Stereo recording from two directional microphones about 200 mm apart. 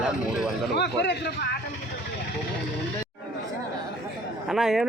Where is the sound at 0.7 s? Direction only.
55° left (ahead or behind).